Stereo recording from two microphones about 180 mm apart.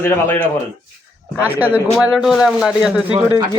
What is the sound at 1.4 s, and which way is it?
Speech, 10° right (ahead or behind).